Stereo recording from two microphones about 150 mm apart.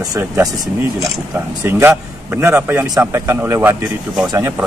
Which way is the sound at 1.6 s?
15° right (ahead or behind).